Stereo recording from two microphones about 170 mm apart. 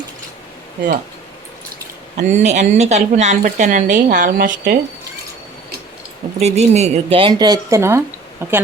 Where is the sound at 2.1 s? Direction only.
45° right (ahead or behind).